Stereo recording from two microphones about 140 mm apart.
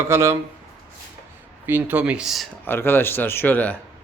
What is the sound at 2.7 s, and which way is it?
A man's voice, 15° left (ahead or behind).